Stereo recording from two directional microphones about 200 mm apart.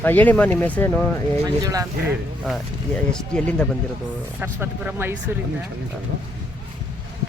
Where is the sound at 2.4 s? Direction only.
Centre (ahead or behind).